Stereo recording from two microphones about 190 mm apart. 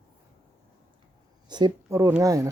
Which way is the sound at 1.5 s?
20° right (ahead or behind).